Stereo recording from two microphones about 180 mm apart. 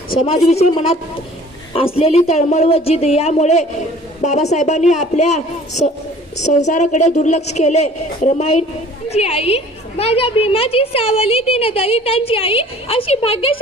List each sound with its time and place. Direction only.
0.3 s a woman's voice: 35° left (ahead or behind)
1.7 s a woman's voice: 30° left (ahead or behind)